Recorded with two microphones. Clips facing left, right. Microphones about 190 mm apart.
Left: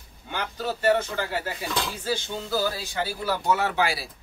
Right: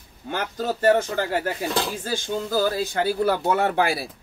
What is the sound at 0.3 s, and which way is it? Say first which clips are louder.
Speech: right 4 dB; 45° right (ahead or behind).